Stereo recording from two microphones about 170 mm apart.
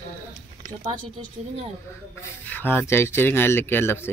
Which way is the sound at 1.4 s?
40° right (ahead or behind).